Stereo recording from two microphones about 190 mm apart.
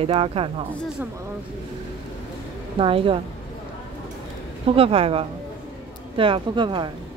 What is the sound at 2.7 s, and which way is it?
Speech, 25° right (ahead or behind).